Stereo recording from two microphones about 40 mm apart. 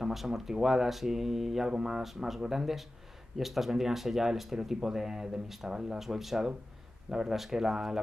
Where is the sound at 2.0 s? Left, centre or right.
Centre.